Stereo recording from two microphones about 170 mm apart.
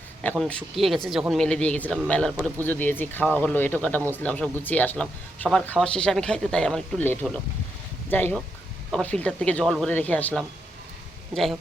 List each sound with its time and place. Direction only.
0.2 s speech: 10° left (ahead or behind)